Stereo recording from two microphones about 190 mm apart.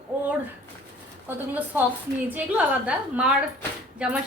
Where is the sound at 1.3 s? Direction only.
10° right (ahead or behind).